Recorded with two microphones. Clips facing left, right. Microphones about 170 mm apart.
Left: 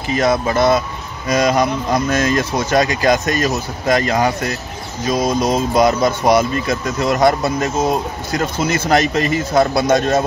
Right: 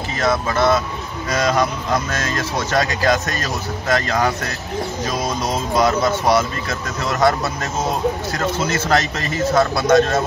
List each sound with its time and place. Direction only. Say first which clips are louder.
0.1 s speech: left 4 dB; 15° left (ahead or behind)